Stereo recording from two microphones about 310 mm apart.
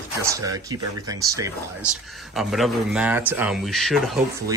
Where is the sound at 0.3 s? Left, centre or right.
Centre.